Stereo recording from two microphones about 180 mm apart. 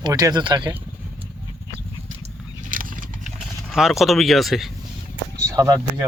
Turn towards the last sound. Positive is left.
turn(degrees=-20)  # may be behind; listen again after turning